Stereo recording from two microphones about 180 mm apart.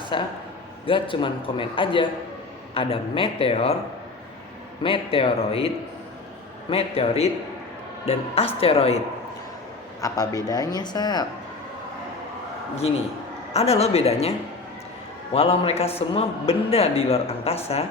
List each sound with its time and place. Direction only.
0.1 s a man's voice: 25° left (ahead or behind)
4.8 s a man's voice: 30° left (ahead or behind)
10.0 s a man's voice: 20° left (ahead or behind)
13.5 s a man's voice: 35° left (ahead or behind)